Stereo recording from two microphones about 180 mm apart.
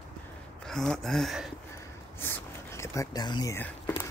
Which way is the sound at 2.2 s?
15° left (ahead or behind).